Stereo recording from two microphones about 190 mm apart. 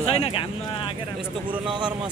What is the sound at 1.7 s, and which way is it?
Speech, 25° right (ahead or behind).